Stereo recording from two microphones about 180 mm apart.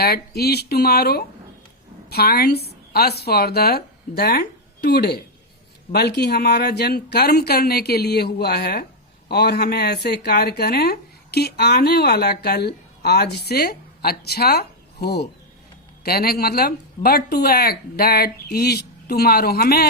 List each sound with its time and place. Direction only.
0.0 s a woman's voice: 60° left (ahead or behind)